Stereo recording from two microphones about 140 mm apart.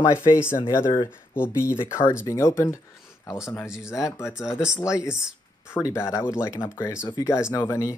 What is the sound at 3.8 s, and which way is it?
Speech, 20° left (ahead or behind).